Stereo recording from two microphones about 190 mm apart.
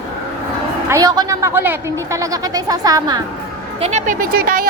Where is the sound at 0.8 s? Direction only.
15° right (ahead or behind).